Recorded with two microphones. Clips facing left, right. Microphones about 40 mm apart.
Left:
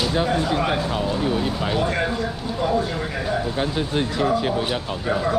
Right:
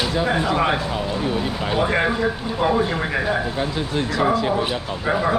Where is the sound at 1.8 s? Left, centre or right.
Right.